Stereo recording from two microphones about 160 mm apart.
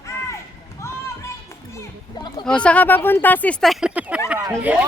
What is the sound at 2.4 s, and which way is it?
Speech, 5° left (ahead or behind).